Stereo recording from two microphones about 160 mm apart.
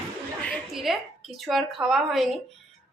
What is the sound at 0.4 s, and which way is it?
A woman's voice, 5° left (ahead or behind).